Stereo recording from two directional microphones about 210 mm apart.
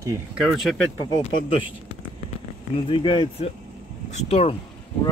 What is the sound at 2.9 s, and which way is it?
Speech, 25° left (ahead or behind).